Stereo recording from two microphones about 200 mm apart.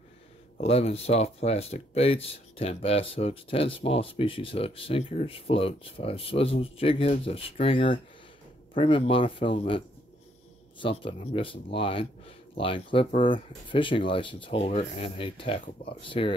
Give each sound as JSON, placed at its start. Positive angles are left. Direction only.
{"t": 0.6, "sound": "speech", "side_deg": 30}